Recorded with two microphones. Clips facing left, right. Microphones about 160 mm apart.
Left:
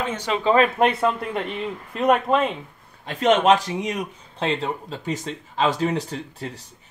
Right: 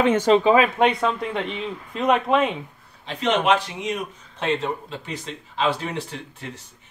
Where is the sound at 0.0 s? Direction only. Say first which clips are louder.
Right 9 dB; 55° right (ahead or behind).